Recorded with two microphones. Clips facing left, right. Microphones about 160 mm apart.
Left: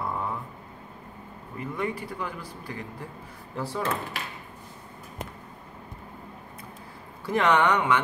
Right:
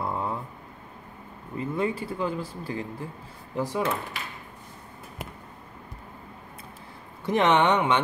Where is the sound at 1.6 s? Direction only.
25° right (ahead or behind).